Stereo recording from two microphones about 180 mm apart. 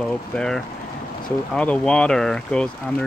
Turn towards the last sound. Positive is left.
turn(degrees=5)  # may be behind; listen again after turning